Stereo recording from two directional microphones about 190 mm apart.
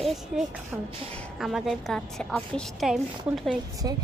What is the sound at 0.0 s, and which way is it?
A woman's voice, centre (ahead or behind).